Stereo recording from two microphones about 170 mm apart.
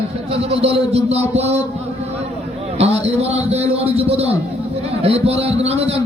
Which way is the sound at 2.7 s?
40° right (ahead or behind).